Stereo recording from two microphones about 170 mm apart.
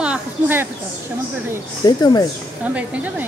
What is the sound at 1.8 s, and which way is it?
Speech, 25° left (ahead or behind).